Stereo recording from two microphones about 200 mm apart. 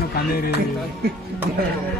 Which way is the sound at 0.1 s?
50° left (ahead or behind).